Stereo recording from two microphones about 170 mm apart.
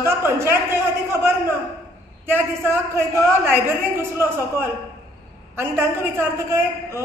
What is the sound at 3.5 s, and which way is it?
A woman's voice, 15° right (ahead or behind).